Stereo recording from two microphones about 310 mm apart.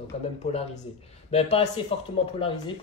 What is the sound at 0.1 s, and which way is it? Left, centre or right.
Speech, left.